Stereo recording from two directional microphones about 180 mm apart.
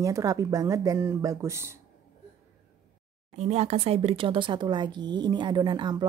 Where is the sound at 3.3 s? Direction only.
35° right (ahead or behind).